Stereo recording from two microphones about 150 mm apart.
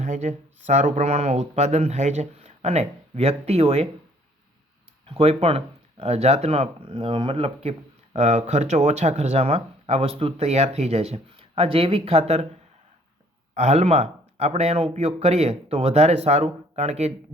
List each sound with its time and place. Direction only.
0.0 s speech: 55° right (ahead or behind)
5.0 s speech: 40° right (ahead or behind)
13.5 s speech: 50° right (ahead or behind)